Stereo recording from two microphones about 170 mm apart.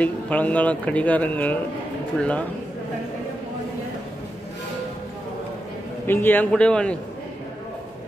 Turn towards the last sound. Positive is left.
turn(degrees=5)  # may be behind; listen again after turning